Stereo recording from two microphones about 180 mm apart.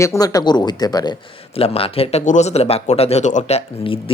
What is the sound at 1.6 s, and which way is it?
Speech, 30° left (ahead or behind).